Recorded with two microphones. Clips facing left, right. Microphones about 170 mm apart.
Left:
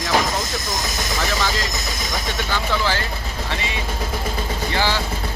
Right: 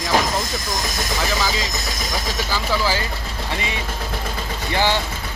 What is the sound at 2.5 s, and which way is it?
Speech, 10° right (ahead or behind).